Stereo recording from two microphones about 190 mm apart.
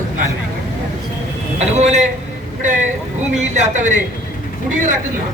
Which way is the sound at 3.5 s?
40° right (ahead or behind).